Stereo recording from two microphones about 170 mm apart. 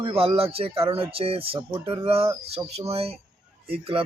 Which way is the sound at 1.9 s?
35° right (ahead or behind).